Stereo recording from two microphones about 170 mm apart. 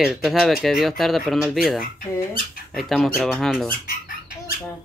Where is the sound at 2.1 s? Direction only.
15° left (ahead or behind).